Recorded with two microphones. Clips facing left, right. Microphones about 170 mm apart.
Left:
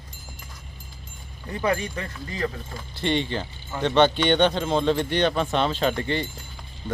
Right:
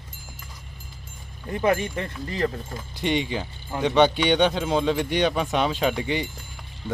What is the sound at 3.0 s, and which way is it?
Speech, 10° right (ahead or behind).